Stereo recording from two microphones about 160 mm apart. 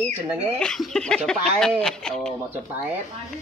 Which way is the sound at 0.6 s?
Centre (ahead or behind).